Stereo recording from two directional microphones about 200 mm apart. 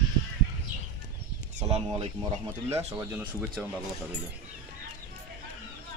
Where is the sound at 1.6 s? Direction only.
30° right (ahead or behind).